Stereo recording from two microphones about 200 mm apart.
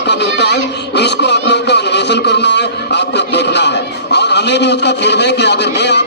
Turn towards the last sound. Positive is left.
turn(degrees=60)  # may be behind; listen again after turning